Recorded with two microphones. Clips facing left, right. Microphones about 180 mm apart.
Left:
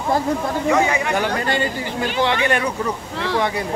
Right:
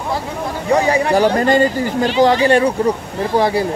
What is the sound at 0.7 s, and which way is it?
Speech, 35° right (ahead or behind).